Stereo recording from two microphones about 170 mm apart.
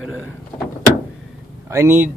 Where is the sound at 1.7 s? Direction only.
15° right (ahead or behind).